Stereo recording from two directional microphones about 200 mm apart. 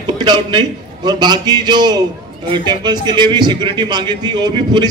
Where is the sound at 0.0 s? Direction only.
20° right (ahead or behind).